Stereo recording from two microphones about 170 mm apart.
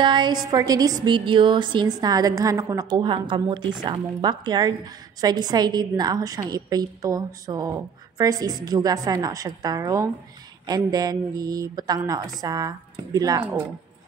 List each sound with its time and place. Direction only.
0.0 s a woman's voice: 25° right (ahead or behind)